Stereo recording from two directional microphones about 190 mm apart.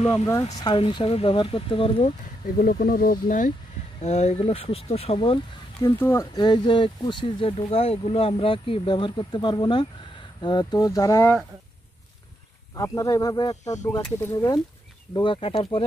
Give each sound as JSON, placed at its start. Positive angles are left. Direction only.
{"t": 0.6, "sound": "speech", "side_deg": 25}
{"t": 2.5, "sound": "speech", "side_deg": 50}
{"t": 5.9, "sound": "speech", "side_deg": 15}
{"t": 12.7, "sound": "speech", "side_deg": 15}